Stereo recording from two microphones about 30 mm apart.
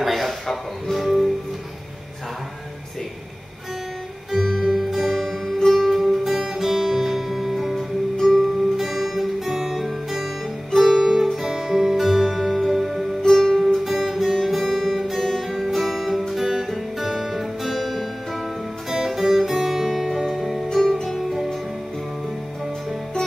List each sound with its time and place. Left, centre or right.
0.0 s a sound: centre
0.9 s music: centre
4.3 s music: centre
8.2 s music: centre
8.7 s music: centre
10.7 s guitar: centre
11.0 s music: centre
13.2 s music: centre
13.8 s music: centre
18.9 s music: centre
20.6 s music: centre
21.2 s music: centre